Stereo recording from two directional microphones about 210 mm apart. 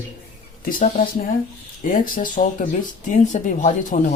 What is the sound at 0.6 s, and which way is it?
Speech, 40° left (ahead or behind).